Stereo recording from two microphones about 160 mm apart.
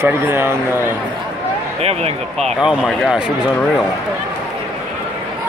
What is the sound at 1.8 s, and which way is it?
Speech, 40° right (ahead or behind).